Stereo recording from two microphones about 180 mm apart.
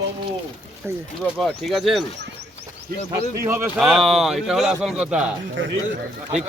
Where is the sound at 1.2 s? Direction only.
Centre (ahead or behind).